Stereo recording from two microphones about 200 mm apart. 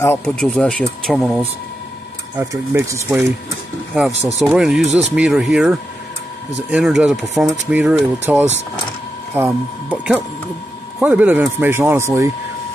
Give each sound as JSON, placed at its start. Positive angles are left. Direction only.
{"t": 0.0, "sound": "speech", "side_deg": 10}
{"t": 2.3, "sound": "speech", "side_deg": -15}
{"t": 4.1, "sound": "speech", "side_deg": -35}
{"t": 4.5, "sound": "speech", "side_deg": -5}